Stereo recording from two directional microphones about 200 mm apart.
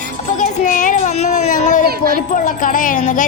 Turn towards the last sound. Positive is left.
turn(degrees=40)  # may be behind; listen again after turning